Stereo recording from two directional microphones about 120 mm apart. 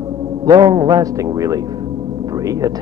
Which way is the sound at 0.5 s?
35° right (ahead or behind).